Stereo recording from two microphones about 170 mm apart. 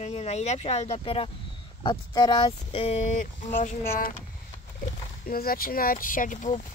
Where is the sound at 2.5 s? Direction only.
35° left (ahead or behind).